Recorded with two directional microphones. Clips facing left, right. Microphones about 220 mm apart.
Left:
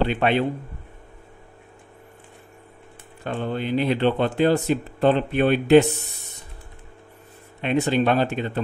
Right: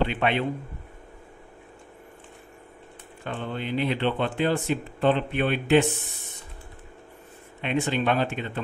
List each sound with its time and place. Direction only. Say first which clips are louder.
0.0 s speech: left 4 dB; 40° left (ahead or behind)
3.3 s speech: left 5 dB; 40° left (ahead or behind)
7.6 s speech: left 5 dB; 40° left (ahead or behind)